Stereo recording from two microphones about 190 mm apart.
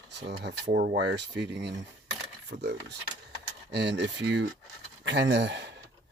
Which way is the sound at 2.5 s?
45° right (ahead or behind).